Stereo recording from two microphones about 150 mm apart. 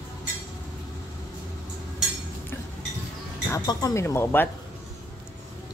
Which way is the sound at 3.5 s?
20° left (ahead or behind).